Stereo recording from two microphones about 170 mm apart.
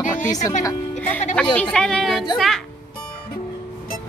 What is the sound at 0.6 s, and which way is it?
Speech, 20° left (ahead or behind).